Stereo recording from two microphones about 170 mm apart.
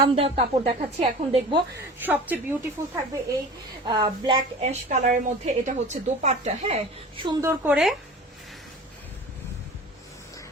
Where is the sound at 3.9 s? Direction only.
25° right (ahead or behind).